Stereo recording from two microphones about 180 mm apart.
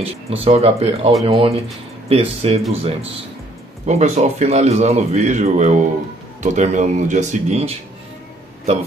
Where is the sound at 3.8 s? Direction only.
40° right (ahead or behind).